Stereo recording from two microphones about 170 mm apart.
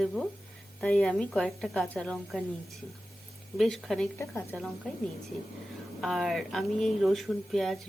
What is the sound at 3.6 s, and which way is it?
Speech, centre (ahead or behind).